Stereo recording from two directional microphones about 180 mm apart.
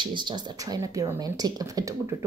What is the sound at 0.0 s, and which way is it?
Speech, 25° right (ahead or behind).